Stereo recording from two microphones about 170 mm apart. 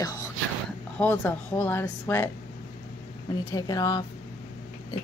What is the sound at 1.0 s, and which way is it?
Speech, 10° left (ahead or behind).